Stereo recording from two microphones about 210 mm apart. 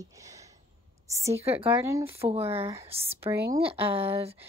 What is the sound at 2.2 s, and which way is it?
Speech, 20° right (ahead or behind).